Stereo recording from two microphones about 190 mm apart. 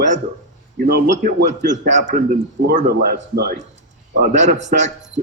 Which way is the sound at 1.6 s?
40° right (ahead or behind).